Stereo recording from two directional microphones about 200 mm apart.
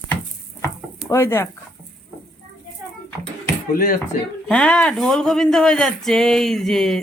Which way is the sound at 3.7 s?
45° left (ahead or behind).